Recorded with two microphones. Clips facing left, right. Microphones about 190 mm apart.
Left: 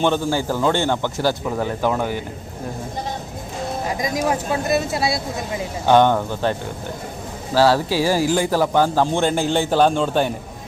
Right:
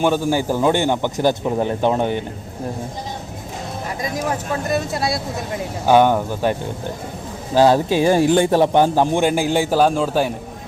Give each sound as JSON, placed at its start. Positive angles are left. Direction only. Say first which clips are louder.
{"t": 0.0, "sound": "speech", "louder": "right 2 dB", "side_deg": -10}
{"t": 4.0, "sound": "speech", "louder": "left 1 dB", "side_deg": 15}
{"t": 5.8, "sound": "speech", "louder": "right 1 dB", "side_deg": -10}